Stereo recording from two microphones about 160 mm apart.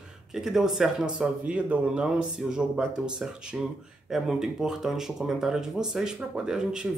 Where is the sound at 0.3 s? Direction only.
5° right (ahead or behind).